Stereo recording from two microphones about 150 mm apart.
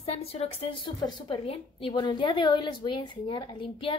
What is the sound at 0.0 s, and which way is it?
A woman's voice, 40° left (ahead or behind).